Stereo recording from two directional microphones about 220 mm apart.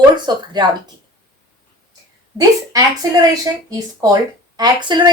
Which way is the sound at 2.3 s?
15° right (ahead or behind).